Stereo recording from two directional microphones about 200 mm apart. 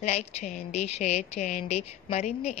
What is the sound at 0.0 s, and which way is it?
Speech, 30° left (ahead or behind).